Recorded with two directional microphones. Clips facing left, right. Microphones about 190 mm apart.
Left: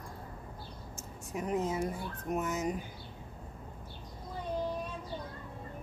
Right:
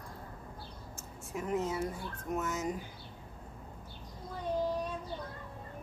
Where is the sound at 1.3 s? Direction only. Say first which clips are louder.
Left 1 dB; 20° left (ahead or behind).